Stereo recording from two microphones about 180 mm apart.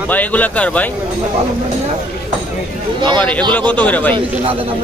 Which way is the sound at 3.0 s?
25° right (ahead or behind).